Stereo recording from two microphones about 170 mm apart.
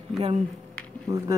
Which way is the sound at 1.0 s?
20° right (ahead or behind).